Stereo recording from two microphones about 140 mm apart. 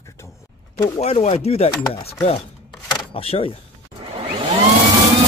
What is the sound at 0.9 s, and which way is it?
Chopping, 50° left (ahead or behind).